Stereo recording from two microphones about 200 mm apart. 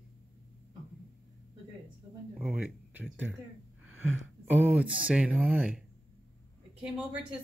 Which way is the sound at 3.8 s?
90° right.